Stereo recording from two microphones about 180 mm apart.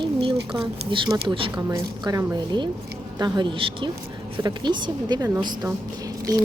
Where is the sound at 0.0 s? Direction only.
30° right (ahead or behind).